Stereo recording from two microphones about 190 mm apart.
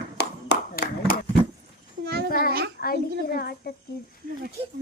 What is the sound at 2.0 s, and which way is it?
Babbling, 60° right (ahead or behind).